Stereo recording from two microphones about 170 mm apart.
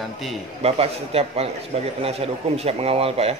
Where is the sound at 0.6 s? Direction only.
35° right (ahead or behind).